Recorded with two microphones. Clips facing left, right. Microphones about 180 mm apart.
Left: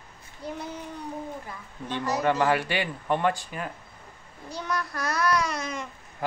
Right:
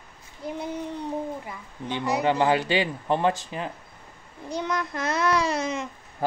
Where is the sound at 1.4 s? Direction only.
15° right (ahead or behind).